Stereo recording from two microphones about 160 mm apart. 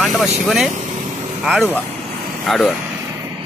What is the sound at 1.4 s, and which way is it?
Speech, centre (ahead or behind).